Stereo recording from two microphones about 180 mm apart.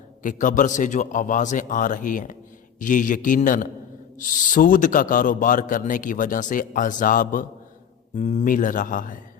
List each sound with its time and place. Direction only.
0.2 s a man's voice: 45° left (ahead or behind)